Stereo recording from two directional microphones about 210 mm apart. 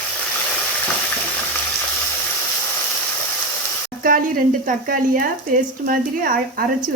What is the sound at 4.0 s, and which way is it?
Speech, 40° right (ahead or behind).